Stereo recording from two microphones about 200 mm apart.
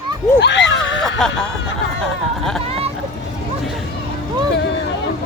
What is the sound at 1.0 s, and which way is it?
Speech, 5° left (ahead or behind).